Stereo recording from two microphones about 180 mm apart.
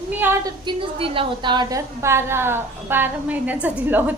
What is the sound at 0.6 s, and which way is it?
A woman's voice, 30° right (ahead or behind).